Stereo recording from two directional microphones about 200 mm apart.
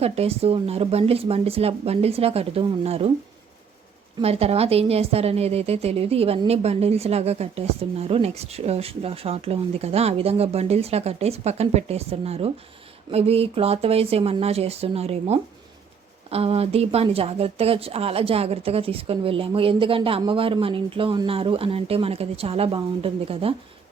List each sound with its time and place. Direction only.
0.0 s speech: 30° right (ahead or behind)
4.2 s a woman's voice: 30° right (ahead or behind)